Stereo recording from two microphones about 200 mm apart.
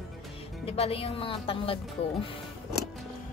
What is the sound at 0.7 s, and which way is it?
Speech, 30° left (ahead or behind).